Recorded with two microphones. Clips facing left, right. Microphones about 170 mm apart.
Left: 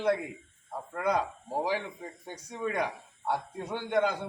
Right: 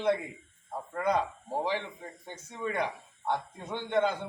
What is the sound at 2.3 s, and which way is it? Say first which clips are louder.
A man's voice: left 1 dB; 10° left (ahead or behind).